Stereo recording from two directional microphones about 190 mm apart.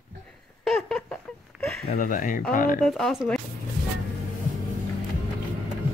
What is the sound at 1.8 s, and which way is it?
Speech, 45° left (ahead or behind).